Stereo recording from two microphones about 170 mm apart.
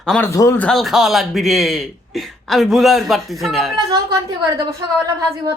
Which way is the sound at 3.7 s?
20° right (ahead or behind).